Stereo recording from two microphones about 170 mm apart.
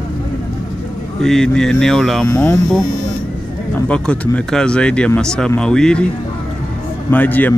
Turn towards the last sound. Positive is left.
turn(degrees=10)  # may be behind; listen again after turning